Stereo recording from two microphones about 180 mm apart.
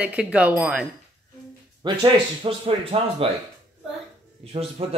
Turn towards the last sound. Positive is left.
turn(degrees=-35)  # may be behind; listen again after turning